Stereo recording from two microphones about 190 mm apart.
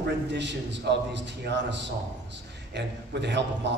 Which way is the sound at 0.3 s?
65° right (ahead or behind).